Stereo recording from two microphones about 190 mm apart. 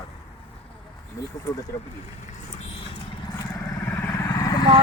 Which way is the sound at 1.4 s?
20° left (ahead or behind).